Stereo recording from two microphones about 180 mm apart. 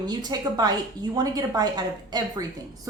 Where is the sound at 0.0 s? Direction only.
25° right (ahead or behind).